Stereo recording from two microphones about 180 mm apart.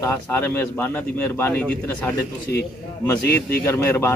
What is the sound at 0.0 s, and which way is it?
Speech, 10° left (ahead or behind).